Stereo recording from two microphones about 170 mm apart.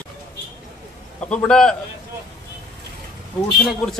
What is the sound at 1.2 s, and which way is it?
Speech, 5° left (ahead or behind).